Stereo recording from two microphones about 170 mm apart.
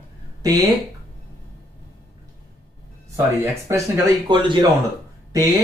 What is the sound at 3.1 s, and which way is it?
Speech, 15° right (ahead or behind).